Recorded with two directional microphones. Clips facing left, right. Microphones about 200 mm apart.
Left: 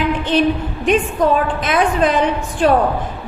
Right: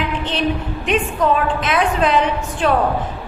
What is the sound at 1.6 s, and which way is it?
Speech, 40° left (ahead or behind).